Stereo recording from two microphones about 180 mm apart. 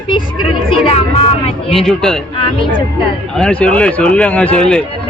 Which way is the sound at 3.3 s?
5° left (ahead or behind).